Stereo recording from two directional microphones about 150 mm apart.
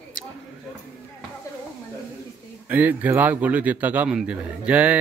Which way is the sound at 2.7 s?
10° right (ahead or behind).